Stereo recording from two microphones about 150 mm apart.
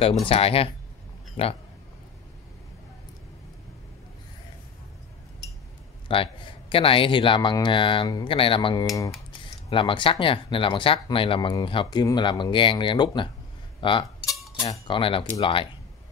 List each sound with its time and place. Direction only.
0.3 s a man's voice: 40° left (ahead or behind)
6.1 s speech: 35° left (ahead or behind)